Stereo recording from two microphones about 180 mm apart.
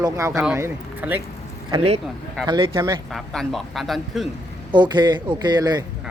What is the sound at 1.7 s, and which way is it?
Speech, 35° right (ahead or behind).